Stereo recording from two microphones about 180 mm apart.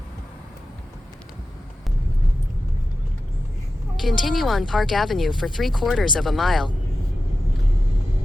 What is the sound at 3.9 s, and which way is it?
A woman's voice, centre (ahead or behind).